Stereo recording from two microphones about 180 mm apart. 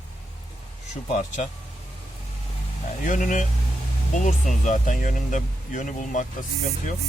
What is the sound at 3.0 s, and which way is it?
Speech, 45° left (ahead or behind).